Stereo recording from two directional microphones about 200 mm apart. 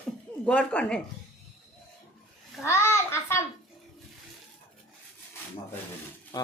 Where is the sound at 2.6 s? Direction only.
15° left (ahead or behind).